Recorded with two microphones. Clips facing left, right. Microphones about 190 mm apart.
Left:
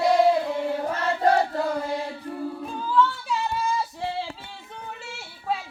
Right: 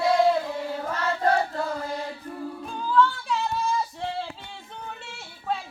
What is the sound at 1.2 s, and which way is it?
Choir, 15° left (ahead or behind).